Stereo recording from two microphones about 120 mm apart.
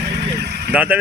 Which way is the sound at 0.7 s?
15° right (ahead or behind).